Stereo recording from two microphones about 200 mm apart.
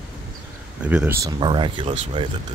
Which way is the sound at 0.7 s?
5° right (ahead or behind).